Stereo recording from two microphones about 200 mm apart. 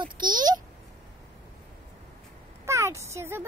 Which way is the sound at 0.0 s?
20° right (ahead or behind).